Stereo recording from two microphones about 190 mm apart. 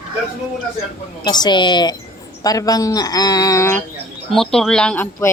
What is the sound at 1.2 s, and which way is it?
Speech, 20° left (ahead or behind).